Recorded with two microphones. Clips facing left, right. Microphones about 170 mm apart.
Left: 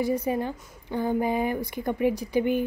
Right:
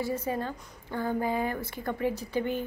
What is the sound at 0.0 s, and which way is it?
A woman's voice, 15° left (ahead or behind).